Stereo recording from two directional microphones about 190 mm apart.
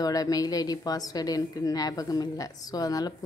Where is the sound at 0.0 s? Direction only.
20° left (ahead or behind).